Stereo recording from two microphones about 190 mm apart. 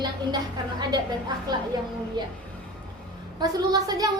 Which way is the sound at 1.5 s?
20° right (ahead or behind).